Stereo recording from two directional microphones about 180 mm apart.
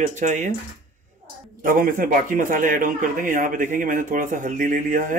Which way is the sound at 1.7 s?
50° right (ahead or behind).